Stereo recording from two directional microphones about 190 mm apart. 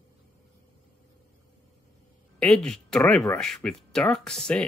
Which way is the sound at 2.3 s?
5° left (ahead or behind).